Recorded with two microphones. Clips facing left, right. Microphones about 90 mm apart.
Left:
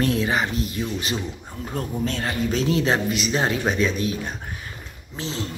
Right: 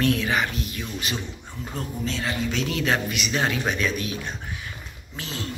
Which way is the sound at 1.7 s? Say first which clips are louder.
Left 4 dB; 50° left (ahead or behind).